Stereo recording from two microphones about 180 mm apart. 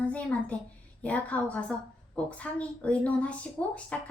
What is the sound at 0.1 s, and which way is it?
Speech, 10° left (ahead or behind).